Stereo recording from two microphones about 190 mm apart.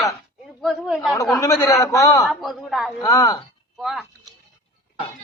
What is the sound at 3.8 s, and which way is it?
Speech, centre (ahead or behind).